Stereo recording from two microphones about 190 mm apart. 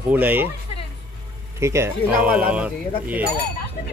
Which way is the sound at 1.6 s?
15° right (ahead or behind).